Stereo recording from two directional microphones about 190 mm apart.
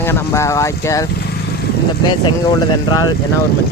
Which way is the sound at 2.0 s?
20° left (ahead or behind).